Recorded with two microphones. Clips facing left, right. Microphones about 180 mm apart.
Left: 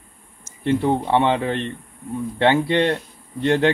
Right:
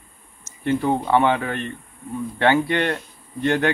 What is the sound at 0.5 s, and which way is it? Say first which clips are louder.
Speech: left 1 dB; 30° left (ahead or behind).